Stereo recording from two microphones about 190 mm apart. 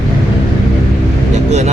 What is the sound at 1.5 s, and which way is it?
Speech, 35° right (ahead or behind).